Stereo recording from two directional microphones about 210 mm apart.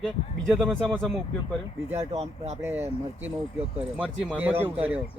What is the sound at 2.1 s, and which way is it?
Speech, 30° right (ahead or behind).